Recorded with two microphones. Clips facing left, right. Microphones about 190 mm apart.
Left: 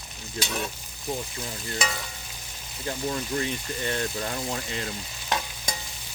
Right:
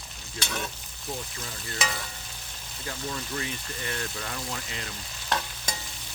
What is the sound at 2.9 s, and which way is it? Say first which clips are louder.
Speech: left 6 dB; 30° left (ahead or behind).